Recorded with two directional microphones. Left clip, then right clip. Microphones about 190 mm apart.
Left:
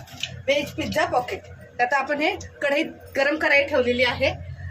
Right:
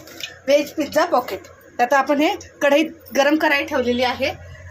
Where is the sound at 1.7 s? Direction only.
35° right (ahead or behind).